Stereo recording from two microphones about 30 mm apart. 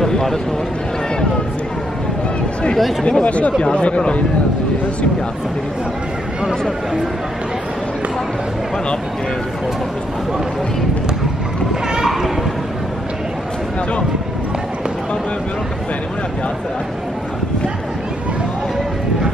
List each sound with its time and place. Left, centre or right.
0.0 s speech: centre
3.1 s speech: left
11.7 s a sound: right